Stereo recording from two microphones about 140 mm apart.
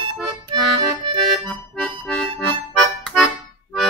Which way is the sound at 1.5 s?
5° left (ahead or behind).